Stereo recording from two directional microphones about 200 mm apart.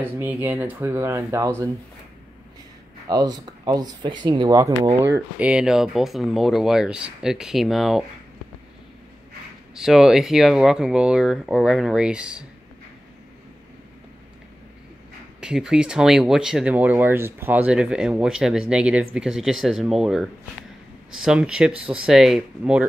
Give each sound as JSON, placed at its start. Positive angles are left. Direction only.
{"t": 0.0, "sound": "speech", "side_deg": -10}
{"t": 3.1, "sound": "speech", "side_deg": -20}
{"t": 5.1, "sound": "speech", "side_deg": -5}
{"t": 9.8, "sound": "speech", "side_deg": 0}
{"t": 15.4, "sound": "speech", "side_deg": -5}